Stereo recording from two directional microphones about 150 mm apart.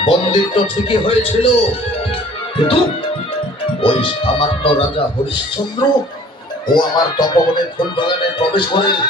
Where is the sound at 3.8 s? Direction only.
35° left (ahead or behind).